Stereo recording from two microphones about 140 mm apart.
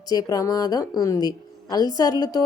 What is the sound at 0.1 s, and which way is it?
A woman's voice, 30° left (ahead or behind).